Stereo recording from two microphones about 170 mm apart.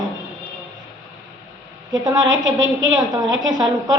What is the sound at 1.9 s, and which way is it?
A woman's voice, 25° right (ahead or behind).